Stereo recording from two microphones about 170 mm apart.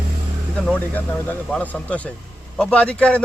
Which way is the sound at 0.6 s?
10° left (ahead or behind).